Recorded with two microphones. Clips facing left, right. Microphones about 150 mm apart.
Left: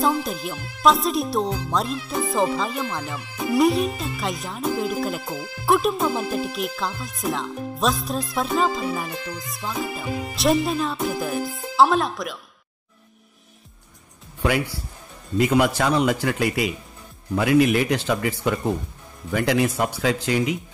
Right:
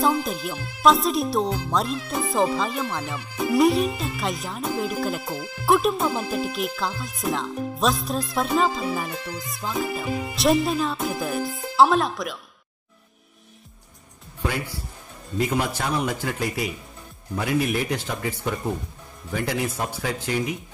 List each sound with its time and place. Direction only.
0.0 s speech: centre (ahead or behind)
14.4 s a man's voice: 85° left
19.3 s a man's voice: 80° left